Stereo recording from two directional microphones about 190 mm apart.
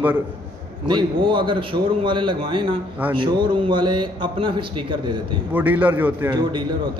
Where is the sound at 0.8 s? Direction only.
25° right (ahead or behind).